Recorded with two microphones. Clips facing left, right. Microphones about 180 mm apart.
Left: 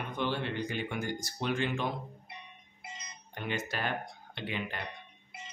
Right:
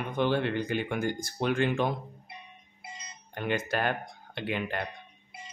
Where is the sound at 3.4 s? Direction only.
55° right (ahead or behind).